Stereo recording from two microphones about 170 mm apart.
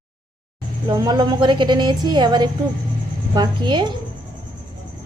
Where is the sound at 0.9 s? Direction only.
25° right (ahead or behind).